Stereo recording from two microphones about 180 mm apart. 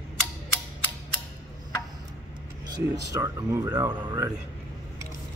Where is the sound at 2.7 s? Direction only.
20° right (ahead or behind).